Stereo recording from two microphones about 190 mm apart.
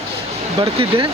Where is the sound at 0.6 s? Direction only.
30° right (ahead or behind).